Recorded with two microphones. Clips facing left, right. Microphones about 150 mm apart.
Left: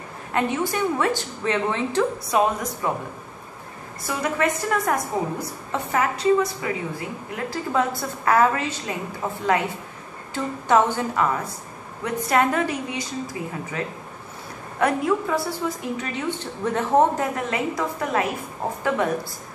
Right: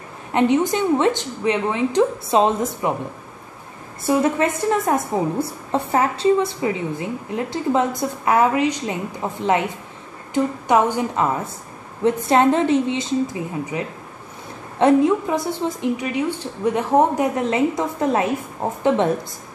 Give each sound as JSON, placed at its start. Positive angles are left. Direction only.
{"t": 0.3, "sound": "a woman's voice", "side_deg": -20}
{"t": 4.1, "sound": "a woman's voice", "side_deg": -25}
{"t": 17.5, "sound": "a woman's voice", "side_deg": -25}